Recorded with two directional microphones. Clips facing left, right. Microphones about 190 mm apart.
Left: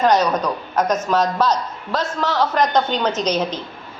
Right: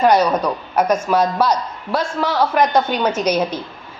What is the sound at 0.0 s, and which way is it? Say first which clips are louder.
A woman's voice: right 2 dB; 10° right (ahead or behind).